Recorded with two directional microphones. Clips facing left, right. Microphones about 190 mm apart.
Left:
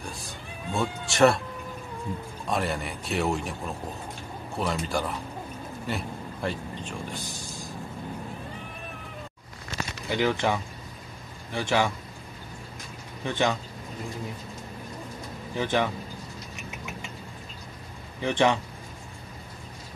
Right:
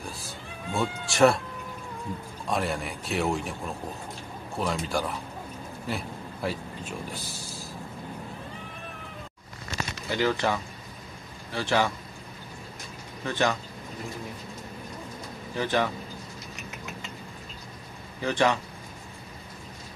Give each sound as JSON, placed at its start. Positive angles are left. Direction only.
{"t": 0.7, "sound": "speech", "side_deg": 0}
{"t": 2.4, "sound": "speech", "side_deg": 0}
{"t": 5.9, "sound": "a sound", "side_deg": 0}
{"t": 10.0, "sound": "speech", "side_deg": 15}
{"t": 13.2, "sound": "speech", "side_deg": 15}
{"t": 15.5, "sound": "speech", "side_deg": 15}
{"t": 18.2, "sound": "speech", "side_deg": 20}